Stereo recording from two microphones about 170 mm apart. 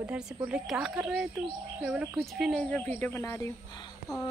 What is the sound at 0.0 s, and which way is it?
Speech, 5° right (ahead or behind).